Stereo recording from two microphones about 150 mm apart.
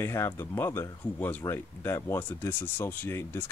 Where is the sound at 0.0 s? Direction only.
15° left (ahead or behind).